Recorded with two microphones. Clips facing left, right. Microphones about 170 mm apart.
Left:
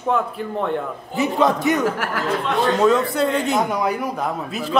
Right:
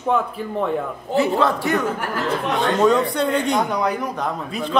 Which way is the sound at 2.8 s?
Centre (ahead or behind).